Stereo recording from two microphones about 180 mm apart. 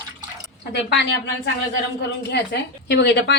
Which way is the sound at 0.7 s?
65° left (ahead or behind).